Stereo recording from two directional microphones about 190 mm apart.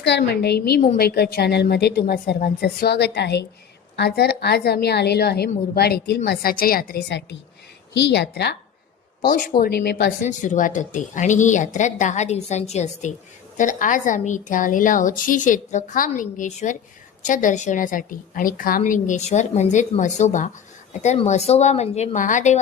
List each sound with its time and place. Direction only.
0.0 s a woman's voice: 60° left (ahead or behind)
9.6 s a woman's voice: 55° left (ahead or behind)
10.2 s a woman's voice: 40° left (ahead or behind)